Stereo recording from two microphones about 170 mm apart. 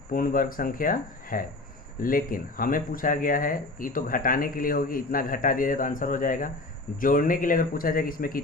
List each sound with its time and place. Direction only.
0.1 s speech: 55° left (ahead or behind)